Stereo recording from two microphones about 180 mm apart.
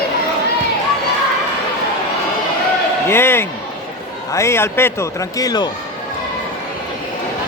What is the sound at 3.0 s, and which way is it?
A man's voice, 15° left (ahead or behind).